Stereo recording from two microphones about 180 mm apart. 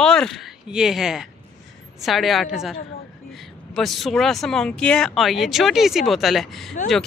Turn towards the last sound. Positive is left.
turn(degrees=0)  # may be behind; listen again after turning